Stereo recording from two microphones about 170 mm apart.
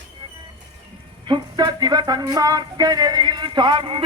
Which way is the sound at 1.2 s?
25° right (ahead or behind).